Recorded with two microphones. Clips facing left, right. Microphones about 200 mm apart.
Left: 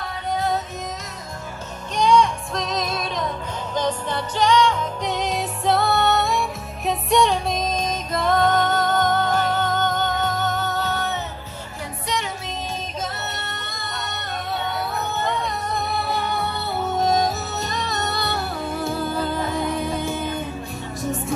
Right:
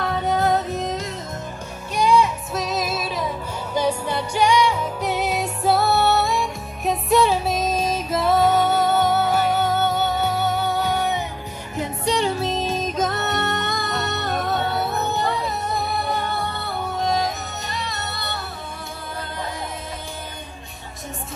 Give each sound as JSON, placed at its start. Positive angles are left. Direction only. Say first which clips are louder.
{"t": 0.0, "sound": "music", "louder": "right 4 dB", "side_deg": -65}
{"t": 2.0, "sound": "music", "louder": "even", "side_deg": -5}
{"t": 12.1, "sound": "music", "louder": "right 7 dB", "side_deg": -30}
{"t": 13.3, "sound": "music", "louder": "right 10 dB", "side_deg": -70}
{"t": 14.0, "sound": "music", "louder": "right 6 dB", "side_deg": -50}
{"t": 14.8, "sound": "music", "louder": "right 3 dB", "side_deg": -20}
{"t": 17.6, "sound": "music", "louder": "left 3 dB", "side_deg": 45}